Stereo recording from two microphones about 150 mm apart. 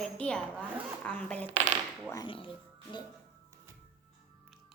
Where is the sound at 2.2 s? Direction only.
35° left (ahead or behind).